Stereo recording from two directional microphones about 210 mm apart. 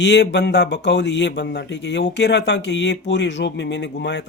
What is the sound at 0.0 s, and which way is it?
Speech, 55° left (ahead or behind).